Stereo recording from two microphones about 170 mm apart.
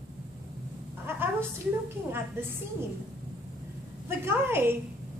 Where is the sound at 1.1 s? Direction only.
15° right (ahead or behind).